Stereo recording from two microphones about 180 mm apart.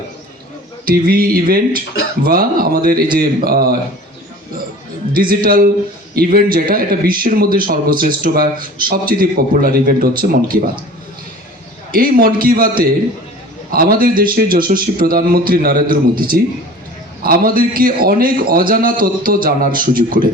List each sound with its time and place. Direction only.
0.9 s a man's voice: 55° right (ahead or behind)
5.1 s a man's voice: 50° right (ahead or behind)
11.9 s a man's voice: 50° right (ahead or behind)